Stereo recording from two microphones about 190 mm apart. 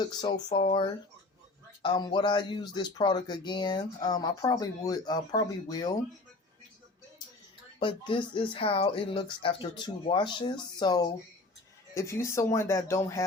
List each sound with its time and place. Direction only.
0.0 s speech: 20° left (ahead or behind)
1.8 s speech: 25° left (ahead or behind)
7.8 s speech: 25° left (ahead or behind)